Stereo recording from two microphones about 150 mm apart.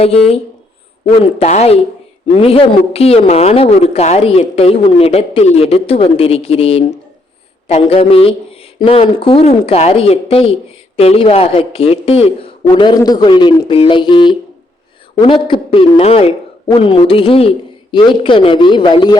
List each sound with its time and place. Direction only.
0.0 s speech: 40° left (ahead or behind)
12.6 s speech: 30° left (ahead or behind)